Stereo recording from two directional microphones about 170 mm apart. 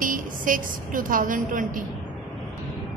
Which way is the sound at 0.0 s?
55° right (ahead or behind).